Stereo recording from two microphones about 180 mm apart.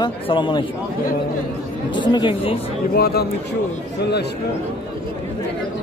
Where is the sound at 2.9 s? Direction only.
60° left (ahead or behind).